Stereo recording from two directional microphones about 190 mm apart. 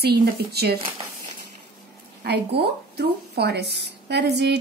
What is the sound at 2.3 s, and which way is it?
A woman's voice, 60° right (ahead or behind).